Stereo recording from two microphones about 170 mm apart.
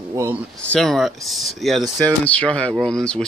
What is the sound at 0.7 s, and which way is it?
Speech, centre (ahead or behind).